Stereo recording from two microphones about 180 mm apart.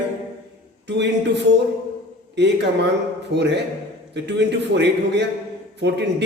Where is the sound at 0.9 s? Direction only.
75° right (ahead or behind).